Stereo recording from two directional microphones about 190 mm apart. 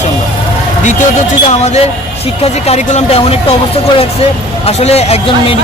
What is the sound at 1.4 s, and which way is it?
A man's voice, 35° left (ahead or behind).